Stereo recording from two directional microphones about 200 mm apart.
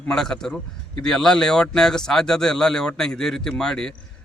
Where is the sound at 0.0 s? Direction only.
5° left (ahead or behind).